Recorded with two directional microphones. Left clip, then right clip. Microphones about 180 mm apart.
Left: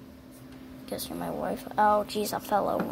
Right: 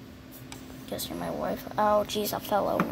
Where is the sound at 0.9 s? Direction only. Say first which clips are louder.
Even; 20° left (ahead or behind).